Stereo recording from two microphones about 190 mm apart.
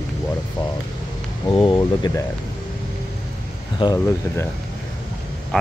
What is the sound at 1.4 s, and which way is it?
Speech, 25° left (ahead or behind).